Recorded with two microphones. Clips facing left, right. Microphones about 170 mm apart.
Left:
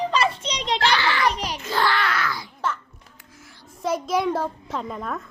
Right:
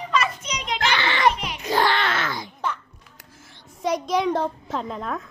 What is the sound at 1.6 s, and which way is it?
Groan, 15° right (ahead or behind).